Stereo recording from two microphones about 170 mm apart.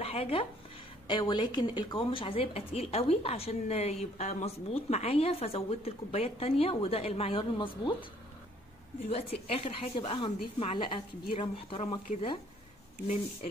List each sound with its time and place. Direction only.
0.0 s a woman's voice: 35° left (ahead or behind)
9.1 s a woman's voice: 35° left (ahead or behind)
13.0 s speech: 45° left (ahead or behind)